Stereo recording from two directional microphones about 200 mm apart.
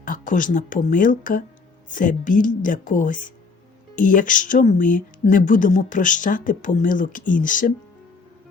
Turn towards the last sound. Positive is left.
turn(degrees=40)  # may be behind; listen again after turning